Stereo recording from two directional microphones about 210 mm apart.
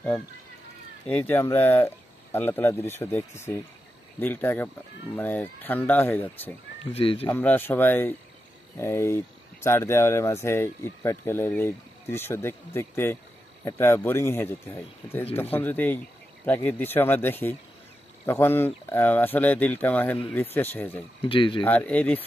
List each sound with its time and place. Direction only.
1.0 s speech: 5° left (ahead or behind)
6.9 s speech: 30° left (ahead or behind)
7.2 s speech: 10° left (ahead or behind)
21.3 s speech: 25° left (ahead or behind)
21.6 s speech: 5° left (ahead or behind)